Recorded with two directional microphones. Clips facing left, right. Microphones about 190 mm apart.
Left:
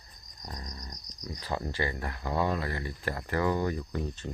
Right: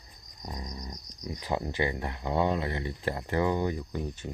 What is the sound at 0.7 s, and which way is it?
Speech, 20° right (ahead or behind).